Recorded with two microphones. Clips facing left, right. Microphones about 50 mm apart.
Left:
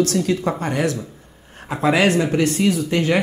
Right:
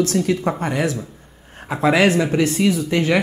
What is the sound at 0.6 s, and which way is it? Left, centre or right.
Speech, right.